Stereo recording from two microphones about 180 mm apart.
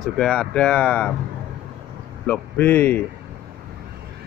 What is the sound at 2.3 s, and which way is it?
Speech, 10° left (ahead or behind).